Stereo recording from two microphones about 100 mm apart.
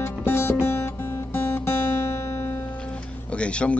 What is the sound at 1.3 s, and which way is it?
Guitar, 25° left (ahead or behind).